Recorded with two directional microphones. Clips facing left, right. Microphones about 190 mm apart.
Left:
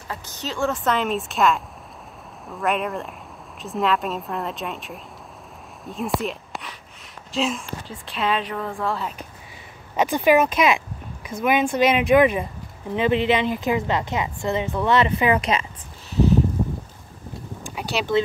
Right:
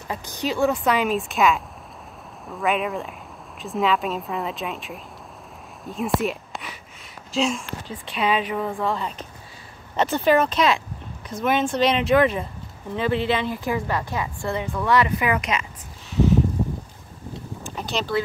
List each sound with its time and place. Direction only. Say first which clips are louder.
0.1 s speech: right 5 dB; 15° right (ahead or behind)
0.9 s speech: right 1 dB; centre (ahead or behind); by 15.6 s 30° left (ahead or behind)
17.6 s a sound: left 1 dB; 10° left (ahead or behind)